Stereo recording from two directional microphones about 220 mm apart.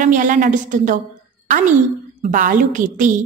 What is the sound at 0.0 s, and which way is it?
Speech, 35° right (ahead or behind).